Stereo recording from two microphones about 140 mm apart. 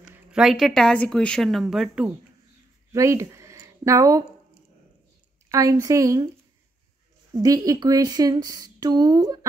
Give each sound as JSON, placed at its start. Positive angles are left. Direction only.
{"t": 0.0, "sound": "speech", "side_deg": -5}
{"t": 2.9, "sound": "speech", "side_deg": -20}
{"t": 5.5, "sound": "speech", "side_deg": -25}
{"t": 7.3, "sound": "speech", "side_deg": -25}